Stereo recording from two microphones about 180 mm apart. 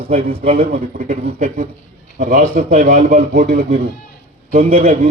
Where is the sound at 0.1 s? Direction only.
35° right (ahead or behind).